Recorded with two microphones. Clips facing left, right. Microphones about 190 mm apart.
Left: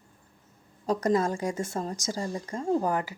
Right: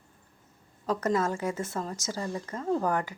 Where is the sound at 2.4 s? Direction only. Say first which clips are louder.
Left 2 dB; 30° left (ahead or behind).